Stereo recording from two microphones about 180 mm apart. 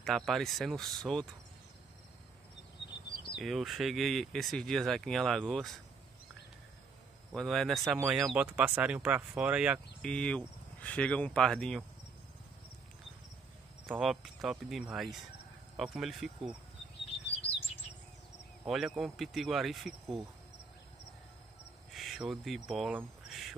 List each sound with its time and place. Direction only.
0.0 s speech: centre (ahead or behind)
3.3 s speech: centre (ahead or behind)
7.3 s speech: centre (ahead or behind)
10.0 s speech: 5° left (ahead or behind)
13.8 s speech: centre (ahead or behind)
17.4 s chirp: 35° left (ahead or behind)
18.7 s speech: centre (ahead or behind)
21.9 s cricket: centre (ahead or behind)